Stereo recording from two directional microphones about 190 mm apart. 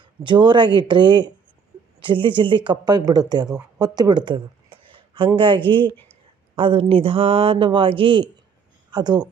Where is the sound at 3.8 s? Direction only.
20° right (ahead or behind).